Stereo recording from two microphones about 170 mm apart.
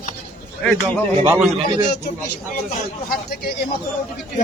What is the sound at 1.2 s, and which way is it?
Speech, 10° right (ahead or behind).